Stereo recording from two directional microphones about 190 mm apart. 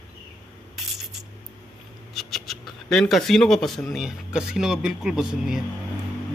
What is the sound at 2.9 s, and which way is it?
Speech, centre (ahead or behind).